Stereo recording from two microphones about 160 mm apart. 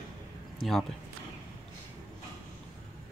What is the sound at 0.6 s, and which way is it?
Speech, centre (ahead or behind).